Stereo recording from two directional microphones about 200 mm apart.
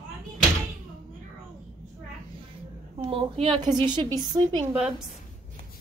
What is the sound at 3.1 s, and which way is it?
A woman's voice, 25° right (ahead or behind).